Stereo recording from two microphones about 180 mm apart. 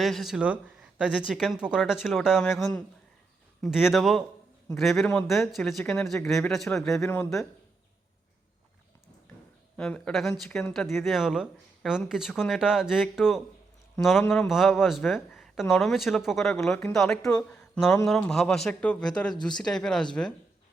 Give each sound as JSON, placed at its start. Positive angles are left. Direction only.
{"t": 0.0, "sound": "speech", "side_deg": 0}
{"t": 2.5, "sound": "speech", "side_deg": 15}
{"t": 3.6, "sound": "speech", "side_deg": -5}
{"t": 6.9, "sound": "speech", "side_deg": 15}
{"t": 9.7, "sound": "speech", "side_deg": 5}